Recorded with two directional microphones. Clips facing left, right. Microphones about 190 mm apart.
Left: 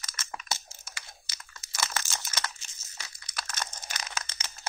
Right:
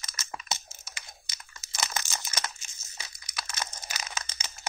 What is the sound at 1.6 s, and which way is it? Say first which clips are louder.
Crumpling: even; 20° right (ahead or behind).